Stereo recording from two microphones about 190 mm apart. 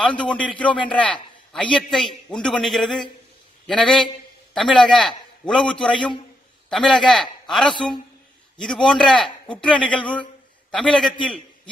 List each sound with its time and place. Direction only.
0.0 s a man's voice: 5° left (ahead or behind)